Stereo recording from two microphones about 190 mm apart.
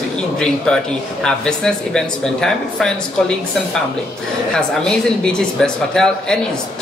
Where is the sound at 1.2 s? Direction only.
5° left (ahead or behind).